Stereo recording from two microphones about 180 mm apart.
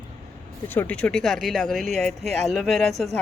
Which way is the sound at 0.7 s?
10° left (ahead or behind).